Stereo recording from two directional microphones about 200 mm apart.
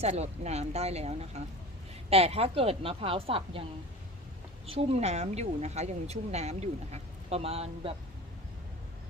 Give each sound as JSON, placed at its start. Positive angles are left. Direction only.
{"t": 0.0, "sound": "speech", "side_deg": -35}
{"t": 4.6, "sound": "speech", "side_deg": -30}